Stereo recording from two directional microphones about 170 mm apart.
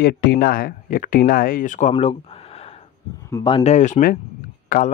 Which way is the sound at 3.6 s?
45° left (ahead or behind).